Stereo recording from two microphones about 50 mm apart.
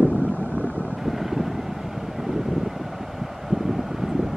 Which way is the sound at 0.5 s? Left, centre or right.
Left.